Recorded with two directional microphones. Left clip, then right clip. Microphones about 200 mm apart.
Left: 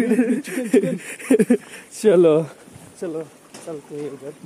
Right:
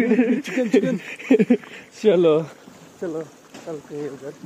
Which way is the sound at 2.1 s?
40° left (ahead or behind).